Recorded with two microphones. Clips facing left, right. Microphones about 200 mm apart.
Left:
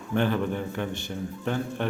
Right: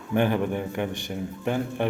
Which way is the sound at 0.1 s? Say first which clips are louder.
Right 2 dB; 15° right (ahead or behind).